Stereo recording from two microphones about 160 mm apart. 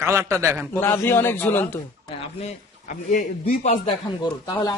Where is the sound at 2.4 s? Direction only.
55° left (ahead or behind).